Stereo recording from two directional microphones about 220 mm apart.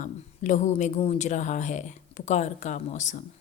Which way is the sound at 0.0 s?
35° left (ahead or behind).